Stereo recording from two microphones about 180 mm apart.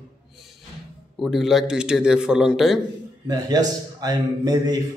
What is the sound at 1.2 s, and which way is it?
Speech, centre (ahead or behind).